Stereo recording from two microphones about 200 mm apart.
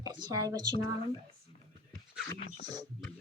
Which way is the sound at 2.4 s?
30° left (ahead or behind).